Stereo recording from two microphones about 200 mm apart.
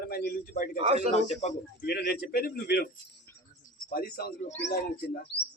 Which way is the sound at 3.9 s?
45° left (ahead or behind).